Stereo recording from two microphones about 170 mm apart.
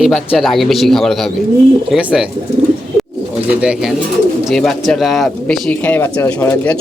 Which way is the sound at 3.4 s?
5° right (ahead or behind).